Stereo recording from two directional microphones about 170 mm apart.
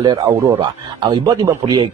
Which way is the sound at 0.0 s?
30° right (ahead or behind).